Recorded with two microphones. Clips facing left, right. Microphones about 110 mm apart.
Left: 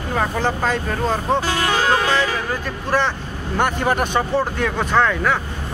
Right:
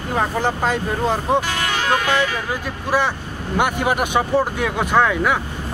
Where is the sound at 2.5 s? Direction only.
10° right (ahead or behind).